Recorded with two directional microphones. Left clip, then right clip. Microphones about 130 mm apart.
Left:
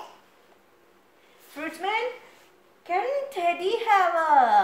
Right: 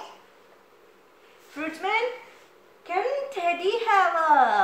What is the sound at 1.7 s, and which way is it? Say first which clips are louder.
Speech: right 1 dB; 65° left (ahead or behind).